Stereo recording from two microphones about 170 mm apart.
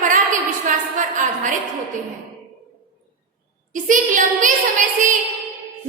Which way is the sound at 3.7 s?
50° right (ahead or behind).